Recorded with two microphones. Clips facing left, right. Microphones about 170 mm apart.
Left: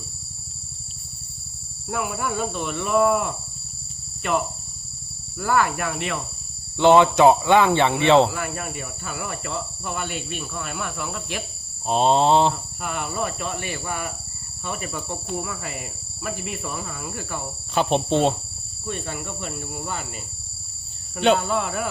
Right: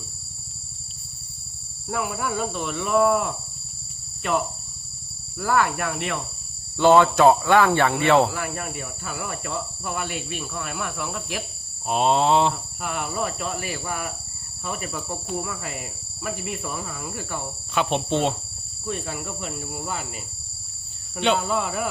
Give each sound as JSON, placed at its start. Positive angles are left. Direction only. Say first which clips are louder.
{"t": 1.9, "sound": "cricket", "louder": "even", "side_deg": 0}
{"t": 6.7, "sound": "speech", "louder": "left 1 dB", "side_deg": 20}
{"t": 8.2, "sound": "cricket", "louder": "left 2 dB", "side_deg": 0}
{"t": 11.9, "sound": "a sound", "louder": "left 2 dB", "side_deg": 30}
{"t": 12.5, "sound": "cricket", "louder": "left 1 dB", "side_deg": 0}
{"t": 17.8, "sound": "a sound", "louder": "left 2 dB", "side_deg": 35}
{"t": 18.1, "sound": "cricket", "louder": "left 3 dB", "side_deg": 0}
{"t": 21.3, "sound": "cricket", "louder": "left 1 dB", "side_deg": 0}